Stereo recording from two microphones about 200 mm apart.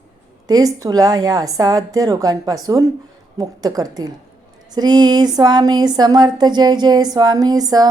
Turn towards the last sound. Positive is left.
turn(degrees=-20)  # may be behind; listen again after turning